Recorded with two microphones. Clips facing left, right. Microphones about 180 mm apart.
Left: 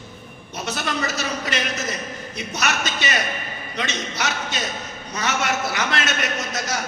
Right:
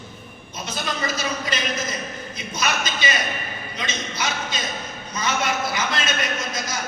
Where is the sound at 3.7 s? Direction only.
75° left (ahead or behind).